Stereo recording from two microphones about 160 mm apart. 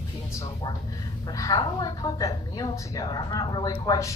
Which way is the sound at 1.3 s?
20° left (ahead or behind).